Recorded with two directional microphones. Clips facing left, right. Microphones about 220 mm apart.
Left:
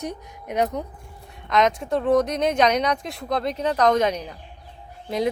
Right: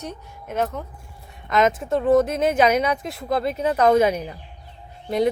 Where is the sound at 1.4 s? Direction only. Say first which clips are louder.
Right 1 dB; 5° right (ahead or behind).